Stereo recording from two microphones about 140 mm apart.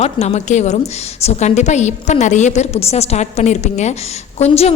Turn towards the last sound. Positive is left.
turn(degrees=50)  # may be behind; listen again after turning